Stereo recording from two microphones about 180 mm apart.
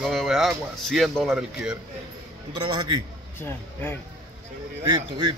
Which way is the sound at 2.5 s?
25° right (ahead or behind).